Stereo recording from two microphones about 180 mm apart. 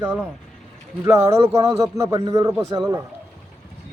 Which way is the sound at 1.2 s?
15° right (ahead or behind).